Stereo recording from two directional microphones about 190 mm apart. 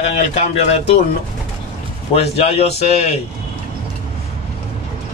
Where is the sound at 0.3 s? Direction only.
35° left (ahead or behind).